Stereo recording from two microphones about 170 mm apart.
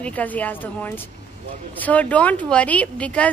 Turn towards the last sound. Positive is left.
turn(degrees=5)  # may be behind; listen again after turning